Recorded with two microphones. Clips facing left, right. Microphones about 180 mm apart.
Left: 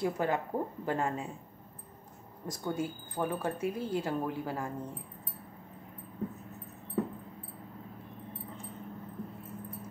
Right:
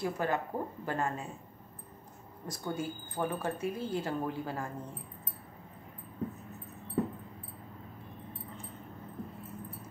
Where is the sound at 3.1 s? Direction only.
10° left (ahead or behind).